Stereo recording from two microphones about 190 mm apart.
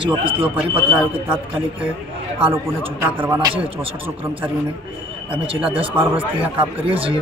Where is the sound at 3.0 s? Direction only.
15° right (ahead or behind).